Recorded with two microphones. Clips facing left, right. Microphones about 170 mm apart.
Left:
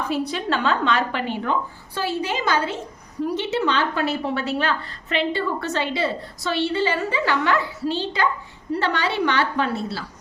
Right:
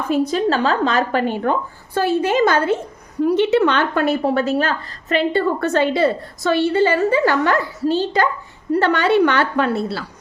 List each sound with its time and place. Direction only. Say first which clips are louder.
0.1 s a woman's voice: right 10 dB; 45° right (ahead or behind); by 10.0 s 60° right (ahead or behind)